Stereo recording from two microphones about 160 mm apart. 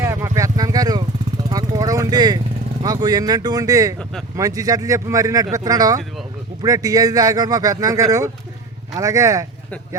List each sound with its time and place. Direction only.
0.0 s vehicle: 15° right (ahead or behind)
2.8 s speech: 25° right (ahead or behind)